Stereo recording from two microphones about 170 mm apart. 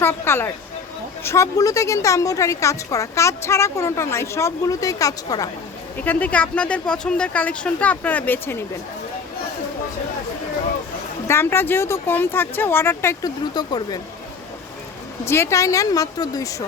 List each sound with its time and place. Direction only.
0.0 s a woman's voice: 15° left (ahead or behind)
6.1 s a woman's voice: 10° left (ahead or behind)
11.3 s a woman's voice: 15° left (ahead or behind)
15.2 s speech: 15° left (ahead or behind)